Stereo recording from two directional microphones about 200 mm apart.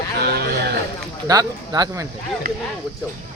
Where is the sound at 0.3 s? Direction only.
55° right (ahead or behind).